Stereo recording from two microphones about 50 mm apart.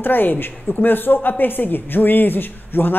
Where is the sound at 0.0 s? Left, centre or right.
Left.